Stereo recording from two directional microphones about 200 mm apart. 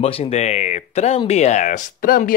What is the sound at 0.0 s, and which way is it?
Speech, 35° left (ahead or behind).